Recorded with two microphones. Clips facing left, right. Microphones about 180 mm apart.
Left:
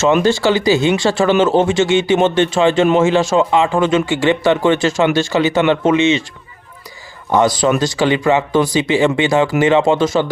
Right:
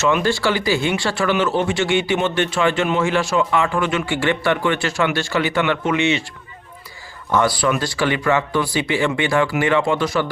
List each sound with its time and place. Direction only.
0.2 s speech: 20° left (ahead or behind)
7.3 s speech: 20° left (ahead or behind)